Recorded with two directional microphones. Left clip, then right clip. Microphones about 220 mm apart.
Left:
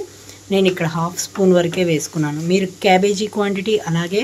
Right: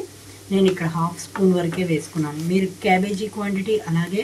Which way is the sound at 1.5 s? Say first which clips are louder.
Left 7 dB; 50° left (ahead or behind).